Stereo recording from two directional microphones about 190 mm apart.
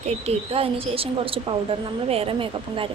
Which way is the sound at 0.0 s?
35° right (ahead or behind).